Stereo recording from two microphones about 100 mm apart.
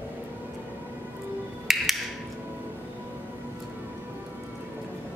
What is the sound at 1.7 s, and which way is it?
Music, centre (ahead or behind).